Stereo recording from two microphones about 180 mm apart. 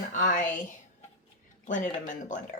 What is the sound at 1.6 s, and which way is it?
Speech, 45° left (ahead or behind).